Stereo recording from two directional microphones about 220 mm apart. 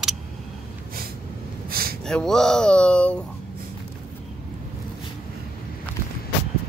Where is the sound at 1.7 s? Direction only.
45° right (ahead or behind).